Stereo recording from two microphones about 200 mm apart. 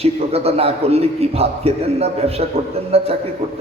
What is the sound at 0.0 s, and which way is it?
A man's voice, 30° right (ahead or behind).